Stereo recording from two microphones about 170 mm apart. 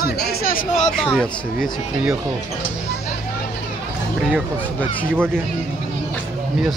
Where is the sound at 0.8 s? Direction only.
Centre (ahead or behind).